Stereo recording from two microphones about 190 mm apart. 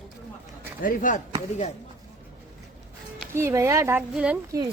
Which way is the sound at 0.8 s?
45° left (ahead or behind).